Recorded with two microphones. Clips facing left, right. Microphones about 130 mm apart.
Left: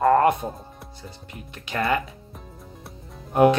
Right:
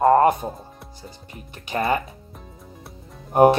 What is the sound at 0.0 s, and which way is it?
Music, 25° right (ahead or behind).